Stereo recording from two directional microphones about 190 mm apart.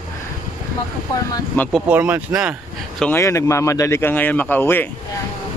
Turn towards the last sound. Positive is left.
turn(degrees=10)  # may be behind; listen again after turning